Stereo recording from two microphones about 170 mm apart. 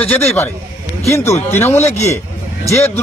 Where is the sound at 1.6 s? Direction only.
40° left (ahead or behind).